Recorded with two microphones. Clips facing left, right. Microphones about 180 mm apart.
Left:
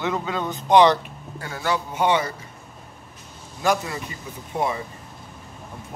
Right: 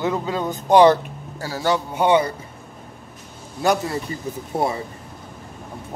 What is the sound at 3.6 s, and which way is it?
Speech, 35° right (ahead or behind).